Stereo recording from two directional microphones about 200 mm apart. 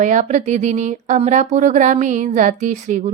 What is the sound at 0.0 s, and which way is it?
Speech, 40° right (ahead or behind).